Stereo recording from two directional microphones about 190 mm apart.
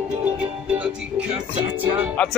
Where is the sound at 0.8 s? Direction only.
5° right (ahead or behind).